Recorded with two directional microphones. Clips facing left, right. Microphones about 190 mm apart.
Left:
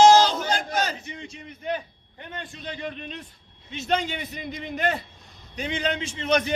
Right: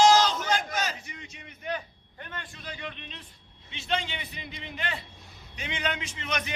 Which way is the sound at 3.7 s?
45° left (ahead or behind).